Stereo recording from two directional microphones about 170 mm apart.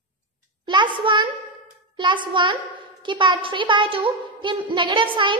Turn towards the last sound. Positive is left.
turn(degrees=-30)  # may be behind; listen again after turning